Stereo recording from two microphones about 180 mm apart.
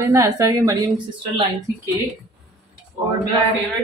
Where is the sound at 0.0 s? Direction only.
20° right (ahead or behind).